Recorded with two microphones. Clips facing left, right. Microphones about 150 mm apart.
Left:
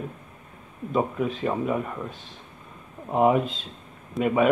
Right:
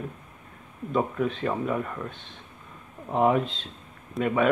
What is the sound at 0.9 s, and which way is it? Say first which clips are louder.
Speech: left 1 dB; 5° left (ahead or behind).